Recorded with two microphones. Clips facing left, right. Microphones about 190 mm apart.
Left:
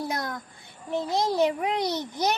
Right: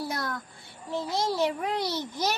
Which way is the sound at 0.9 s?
20° left (ahead or behind).